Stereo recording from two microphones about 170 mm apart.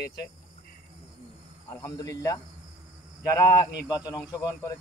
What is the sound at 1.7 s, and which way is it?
Speech, 20° left (ahead or behind).